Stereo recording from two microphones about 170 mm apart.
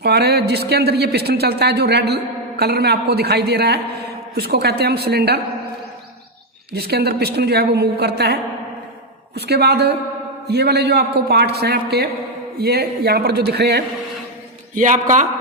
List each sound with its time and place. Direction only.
0.0 s speech: 70° right (ahead or behind)
6.7 s speech: 65° right (ahead or behind)
14.8 s a man's voice: 50° right (ahead or behind)